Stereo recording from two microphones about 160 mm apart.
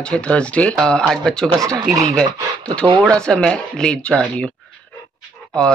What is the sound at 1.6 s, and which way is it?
Speech, 20° right (ahead or behind).